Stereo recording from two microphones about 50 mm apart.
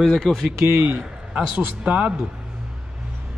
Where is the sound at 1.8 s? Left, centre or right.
Right.